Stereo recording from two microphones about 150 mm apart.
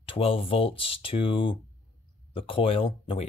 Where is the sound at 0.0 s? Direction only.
35° left (ahead or behind).